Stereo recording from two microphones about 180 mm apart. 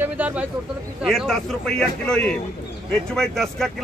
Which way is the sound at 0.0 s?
10° right (ahead or behind).